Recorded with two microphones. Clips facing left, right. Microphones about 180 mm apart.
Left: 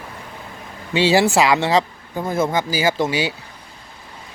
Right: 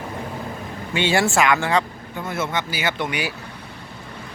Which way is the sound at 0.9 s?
30° left (ahead or behind).